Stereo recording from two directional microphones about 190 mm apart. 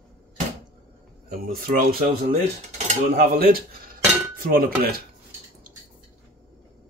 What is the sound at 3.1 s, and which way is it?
Speech, 50° right (ahead or behind).